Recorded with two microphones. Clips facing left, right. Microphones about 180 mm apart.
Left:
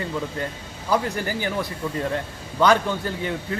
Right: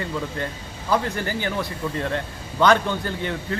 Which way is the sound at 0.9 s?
10° left (ahead or behind).